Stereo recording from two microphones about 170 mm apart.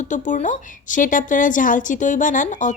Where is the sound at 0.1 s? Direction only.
45° left (ahead or behind).